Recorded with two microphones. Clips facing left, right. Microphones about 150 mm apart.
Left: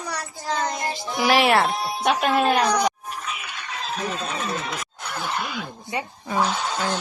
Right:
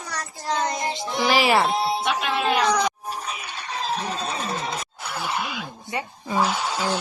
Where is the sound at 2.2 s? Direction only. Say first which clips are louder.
Left 5 dB; 45° left (ahead or behind).